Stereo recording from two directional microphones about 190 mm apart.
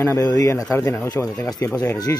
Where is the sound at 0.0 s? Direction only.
20° left (ahead or behind).